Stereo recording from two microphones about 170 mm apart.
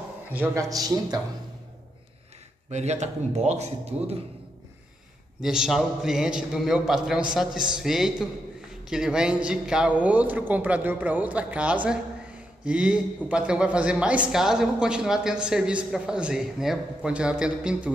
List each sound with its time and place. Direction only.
0.3 s a man's voice: 15° right (ahead or behind)
2.7 s a man's voice: 40° right (ahead or behind)
5.4 s a man's voice: 5° right (ahead or behind)